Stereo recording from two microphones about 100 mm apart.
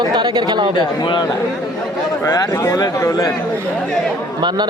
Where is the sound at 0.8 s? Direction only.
50° left (ahead or behind).